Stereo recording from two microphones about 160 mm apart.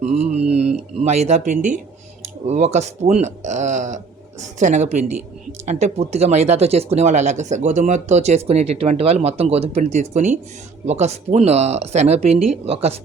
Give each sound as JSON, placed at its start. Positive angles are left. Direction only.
{"t": 0.0, "sound": "mantra", "side_deg": -45}
{"t": 1.0, "sound": "speech", "side_deg": -45}